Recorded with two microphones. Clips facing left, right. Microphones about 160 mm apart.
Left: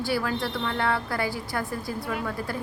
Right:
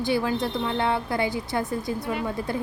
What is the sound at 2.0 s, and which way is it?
Speech, centre (ahead or behind).